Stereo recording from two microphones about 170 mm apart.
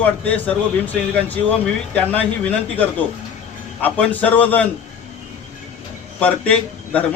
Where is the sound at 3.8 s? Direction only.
10° left (ahead or behind).